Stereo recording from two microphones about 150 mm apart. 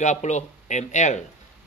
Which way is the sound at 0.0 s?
50° left (ahead or behind).